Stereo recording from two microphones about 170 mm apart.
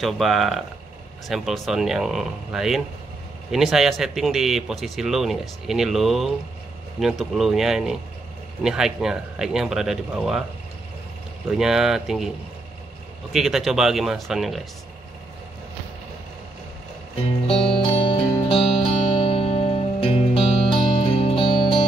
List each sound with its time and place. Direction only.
0.0 s speech: centre (ahead or behind)
11.5 s speech: 5° right (ahead or behind)
13.3 s speech: centre (ahead or behind)
17.5 s music: 35° left (ahead or behind)